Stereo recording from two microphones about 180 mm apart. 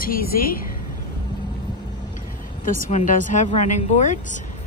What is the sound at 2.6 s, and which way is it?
Speech, 45° left (ahead or behind).